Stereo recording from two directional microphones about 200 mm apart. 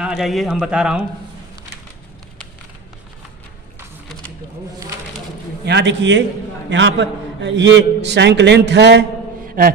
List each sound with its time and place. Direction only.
0.0 s a man's voice: centre (ahead or behind)
5.7 s a man's voice: 60° right (ahead or behind)
9.6 s mantra: 45° right (ahead or behind)